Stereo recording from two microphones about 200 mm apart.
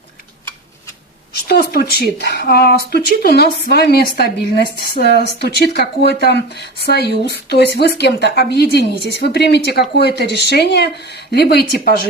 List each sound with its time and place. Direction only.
1.5 s speech: 50° left (ahead or behind)